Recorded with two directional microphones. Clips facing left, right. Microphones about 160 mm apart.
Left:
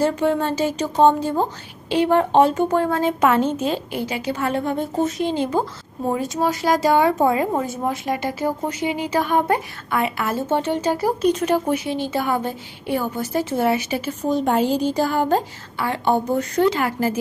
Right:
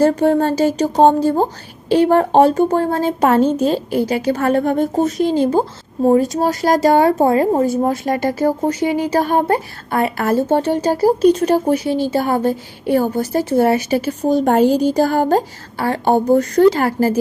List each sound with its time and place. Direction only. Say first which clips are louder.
0.0 s speech: right 6 dB; 40° right (ahead or behind)